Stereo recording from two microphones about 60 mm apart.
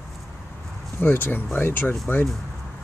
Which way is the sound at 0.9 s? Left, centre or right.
Left.